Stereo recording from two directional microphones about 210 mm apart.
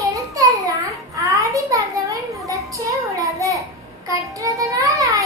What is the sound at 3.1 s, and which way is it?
Child singing, 15° right (ahead or behind).